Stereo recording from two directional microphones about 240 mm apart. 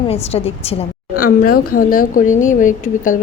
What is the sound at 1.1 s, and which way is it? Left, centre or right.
A woman's voice, left.